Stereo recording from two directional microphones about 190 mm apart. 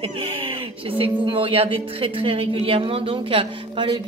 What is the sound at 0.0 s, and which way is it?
Speech, 30° right (ahead or behind).